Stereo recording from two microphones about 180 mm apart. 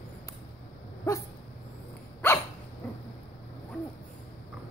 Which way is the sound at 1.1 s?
15° left (ahead or behind).